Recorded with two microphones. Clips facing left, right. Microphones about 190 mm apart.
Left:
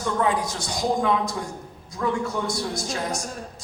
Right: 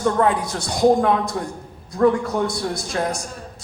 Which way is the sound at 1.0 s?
55° right (ahead or behind).